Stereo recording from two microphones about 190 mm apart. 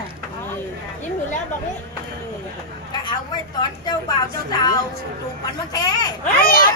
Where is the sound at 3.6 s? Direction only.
20° left (ahead or behind).